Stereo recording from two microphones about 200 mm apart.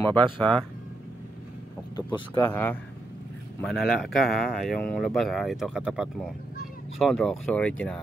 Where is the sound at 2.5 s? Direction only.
5° left (ahead or behind).